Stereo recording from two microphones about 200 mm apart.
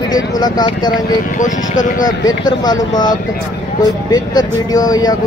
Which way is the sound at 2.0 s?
20° left (ahead or behind).